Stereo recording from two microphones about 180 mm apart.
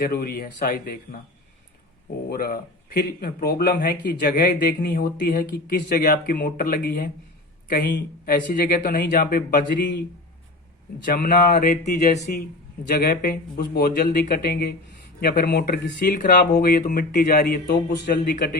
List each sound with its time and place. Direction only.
0.0 s speech: 60° left (ahead or behind)
2.3 s speech: 55° left (ahead or behind)
11.0 s speech: 50° left (ahead or behind)
12.9 s speech: 55° left (ahead or behind)